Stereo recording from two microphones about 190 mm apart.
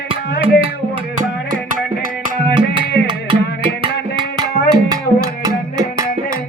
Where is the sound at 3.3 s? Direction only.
25° right (ahead or behind).